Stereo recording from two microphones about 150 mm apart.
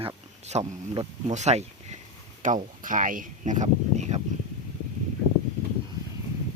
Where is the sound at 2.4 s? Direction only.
60° right (ahead or behind).